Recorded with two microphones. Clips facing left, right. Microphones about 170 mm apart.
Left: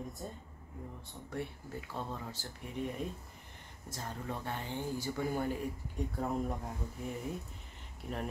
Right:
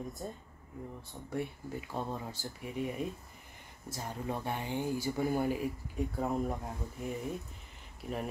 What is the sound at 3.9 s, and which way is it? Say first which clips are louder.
Speech: right 3 dB; 15° right (ahead or behind).